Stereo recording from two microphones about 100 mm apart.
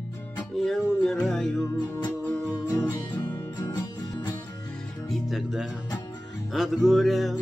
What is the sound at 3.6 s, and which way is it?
Music, 25° left (ahead or behind).